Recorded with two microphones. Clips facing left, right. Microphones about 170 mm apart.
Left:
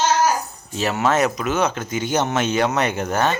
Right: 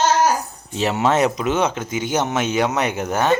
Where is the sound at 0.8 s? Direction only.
25° right (ahead or behind).